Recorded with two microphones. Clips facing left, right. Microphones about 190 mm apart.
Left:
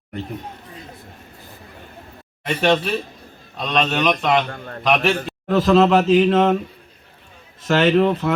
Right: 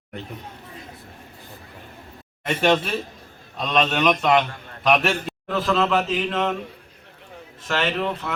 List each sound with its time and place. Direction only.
2.5 s a man's voice: centre (ahead or behind)
4.4 s a man's voice: 55° left (ahead or behind)
4.8 s a man's voice: centre (ahead or behind)
5.5 s a man's voice: 40° left (ahead or behind)
7.7 s a man's voice: 40° left (ahead or behind)